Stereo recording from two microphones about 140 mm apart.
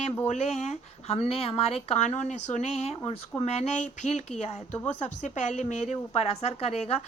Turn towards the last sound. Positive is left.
turn(degrees=50)  # may be behind; listen again after turning